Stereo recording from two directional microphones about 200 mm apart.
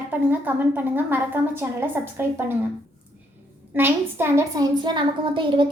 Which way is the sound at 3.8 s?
10° right (ahead or behind).